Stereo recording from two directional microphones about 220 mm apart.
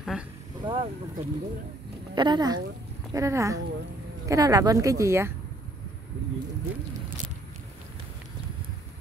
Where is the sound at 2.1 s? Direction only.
20° right (ahead or behind).